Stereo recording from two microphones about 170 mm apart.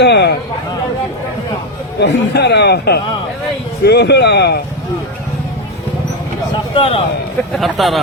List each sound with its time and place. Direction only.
0.0 s a sound: 85° left
2.0 s speech: 80° left
6.7 s a man's voice: 35° left (ahead or behind)
7.5 s speech: centre (ahead or behind)